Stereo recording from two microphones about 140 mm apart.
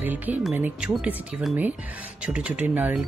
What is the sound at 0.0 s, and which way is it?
Speech, 10° right (ahead or behind).